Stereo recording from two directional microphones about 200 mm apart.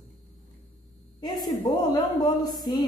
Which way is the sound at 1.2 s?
20° left (ahead or behind).